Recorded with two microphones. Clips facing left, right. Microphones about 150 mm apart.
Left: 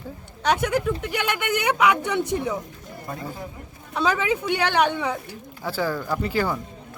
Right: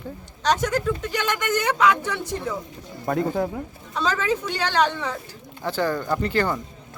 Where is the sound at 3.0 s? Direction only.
60° right (ahead or behind).